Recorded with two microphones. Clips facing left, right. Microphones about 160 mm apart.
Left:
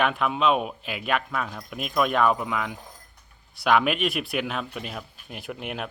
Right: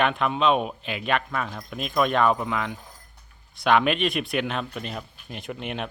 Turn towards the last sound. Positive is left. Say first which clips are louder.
# right 1 dB
turn(degrees=5)  # may be behind; listen again after turning